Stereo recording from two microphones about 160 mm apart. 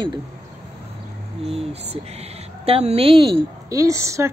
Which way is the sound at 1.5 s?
40° right (ahead or behind).